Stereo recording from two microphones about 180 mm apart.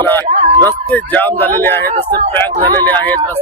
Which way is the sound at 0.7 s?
10° left (ahead or behind).